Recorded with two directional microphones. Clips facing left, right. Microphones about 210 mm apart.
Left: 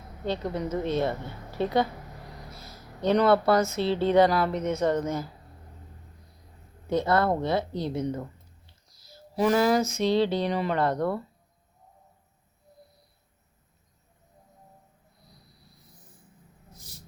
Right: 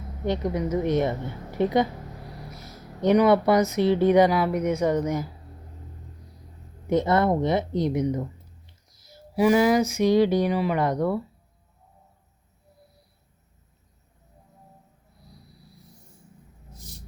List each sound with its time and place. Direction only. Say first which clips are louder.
0.3 s speech: right 4 dB; 15° right (ahead or behind)
6.9 s speech: right 3 dB; 20° right (ahead or behind)